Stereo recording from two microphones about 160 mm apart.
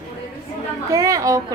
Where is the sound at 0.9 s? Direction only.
20° right (ahead or behind).